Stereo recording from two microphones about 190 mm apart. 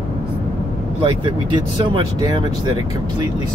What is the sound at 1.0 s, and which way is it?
Speech, 25° right (ahead or behind).